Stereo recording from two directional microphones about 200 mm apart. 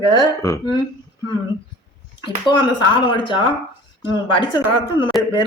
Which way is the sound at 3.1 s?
25° left (ahead or behind).